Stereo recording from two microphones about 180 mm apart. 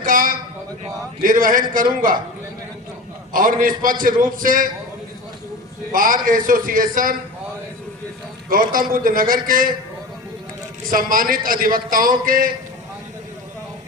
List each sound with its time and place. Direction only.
0.0 s a sound: 50° right (ahead or behind)
1.2 s a man's voice: 50° right (ahead or behind)
3.3 s a man's voice: 50° right (ahead or behind)
5.9 s a man's voice: 50° right (ahead or behind)
8.4 s a man's voice: 50° right (ahead or behind)
10.9 s a man's voice: 50° right (ahead or behind)